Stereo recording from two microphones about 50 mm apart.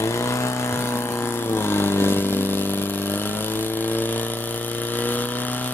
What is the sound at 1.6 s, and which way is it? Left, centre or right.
Vehicle, left.